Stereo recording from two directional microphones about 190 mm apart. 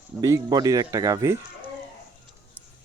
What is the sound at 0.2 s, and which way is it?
Speech, 20° right (ahead or behind).